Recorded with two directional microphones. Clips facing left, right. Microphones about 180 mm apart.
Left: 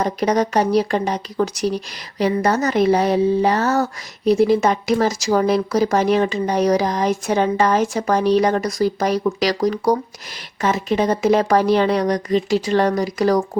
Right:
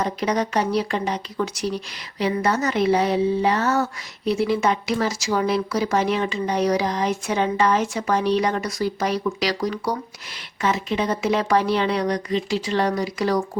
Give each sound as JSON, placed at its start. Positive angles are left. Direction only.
{"t": 0.0, "sound": "speech", "side_deg": 40}